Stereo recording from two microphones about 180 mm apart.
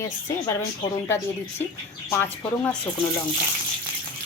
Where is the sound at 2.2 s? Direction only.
10° left (ahead or behind).